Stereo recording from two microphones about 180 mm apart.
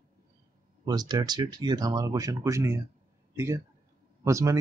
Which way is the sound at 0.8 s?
20° right (ahead or behind).